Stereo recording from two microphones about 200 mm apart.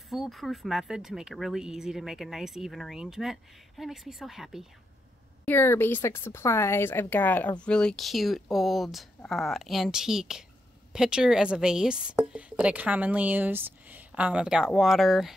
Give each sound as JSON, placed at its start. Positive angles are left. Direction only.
{"t": 0.1, "sound": "speech", "side_deg": 0}
{"t": 5.4, "sound": "a woman's voice", "side_deg": 10}